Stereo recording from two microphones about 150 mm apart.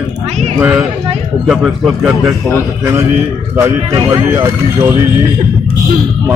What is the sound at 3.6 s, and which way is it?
Speech, 20° right (ahead or behind).